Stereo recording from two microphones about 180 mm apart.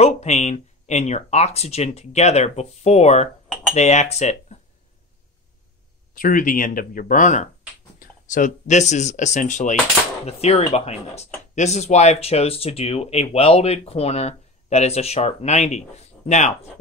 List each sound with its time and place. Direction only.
0.0 s speech: 40° left (ahead or behind)
6.1 s speech: 50° left (ahead or behind)